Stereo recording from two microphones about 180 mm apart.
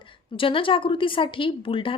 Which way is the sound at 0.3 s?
30° left (ahead or behind).